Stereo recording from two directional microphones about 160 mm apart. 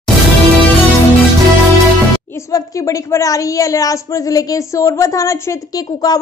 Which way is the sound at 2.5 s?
20° left (ahead or behind).